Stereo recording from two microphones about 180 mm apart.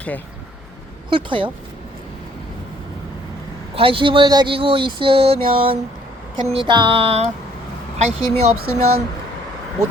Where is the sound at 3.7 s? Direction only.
30° right (ahead or behind).